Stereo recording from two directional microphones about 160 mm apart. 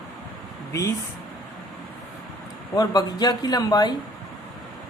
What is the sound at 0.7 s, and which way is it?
Speech, 20° left (ahead or behind).